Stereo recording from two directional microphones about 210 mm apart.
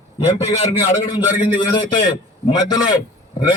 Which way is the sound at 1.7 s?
20° left (ahead or behind).